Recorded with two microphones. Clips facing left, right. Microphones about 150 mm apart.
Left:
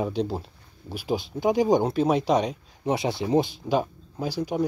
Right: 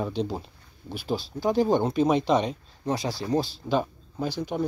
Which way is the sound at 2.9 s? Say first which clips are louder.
Left 3 dB; 20° left (ahead or behind).